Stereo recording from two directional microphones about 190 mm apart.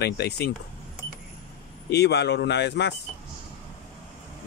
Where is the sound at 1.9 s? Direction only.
60° left (ahead or behind).